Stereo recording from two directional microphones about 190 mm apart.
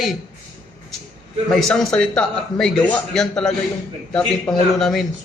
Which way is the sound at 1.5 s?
5° left (ahead or behind).